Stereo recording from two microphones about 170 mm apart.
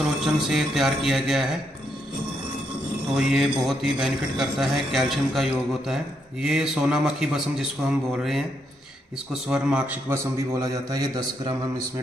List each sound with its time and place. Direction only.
0.0 s speech: centre (ahead or behind)
3.2 s a man's voice: centre (ahead or behind)
9.5 s a man's voice: 5° right (ahead or behind); by 11.5 s 25° right (ahead or behind)